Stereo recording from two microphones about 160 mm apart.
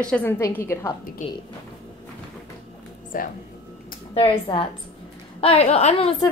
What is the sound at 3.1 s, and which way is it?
Speech, 60° left (ahead or behind).